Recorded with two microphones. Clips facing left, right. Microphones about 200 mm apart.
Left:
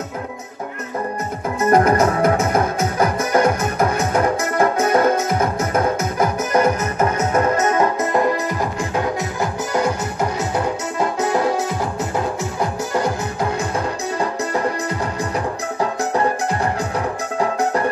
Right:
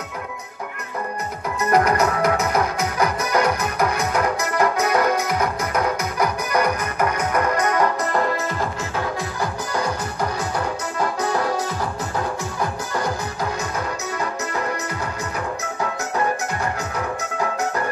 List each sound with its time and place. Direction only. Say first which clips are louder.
1.6 s music: left 4 dB; 25° left (ahead or behind)
12.9 s music: left 4 dB; 25° left (ahead or behind)
15.3 s music: left 4 dB; 30° left (ahead or behind)